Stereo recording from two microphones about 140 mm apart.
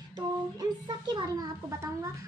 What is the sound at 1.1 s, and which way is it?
Speech, 25° right (ahead or behind).